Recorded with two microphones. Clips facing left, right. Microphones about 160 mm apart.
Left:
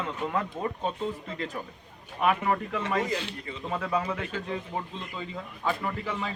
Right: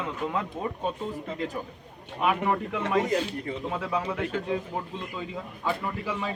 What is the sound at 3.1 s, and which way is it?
Speech, 45° right (ahead or behind).